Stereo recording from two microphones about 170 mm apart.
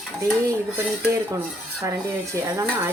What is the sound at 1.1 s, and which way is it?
Dishes, 15° right (ahead or behind).